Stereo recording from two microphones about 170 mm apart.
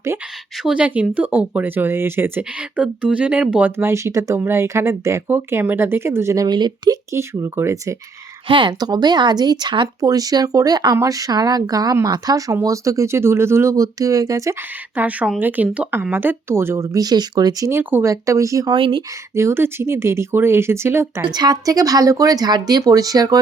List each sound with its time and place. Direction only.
0.6 s speech: 5° right (ahead or behind)
8.4 s speech: 30° right (ahead or behind)
19.3 s speech: 15° right (ahead or behind)